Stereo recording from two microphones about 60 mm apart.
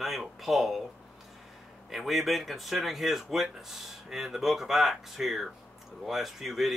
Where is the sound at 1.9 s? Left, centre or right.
Centre.